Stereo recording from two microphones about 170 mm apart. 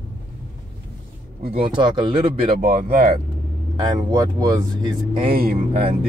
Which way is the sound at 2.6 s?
55° right (ahead or behind).